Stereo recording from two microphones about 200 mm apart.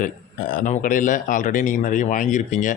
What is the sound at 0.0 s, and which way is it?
Speech, 45° left (ahead or behind).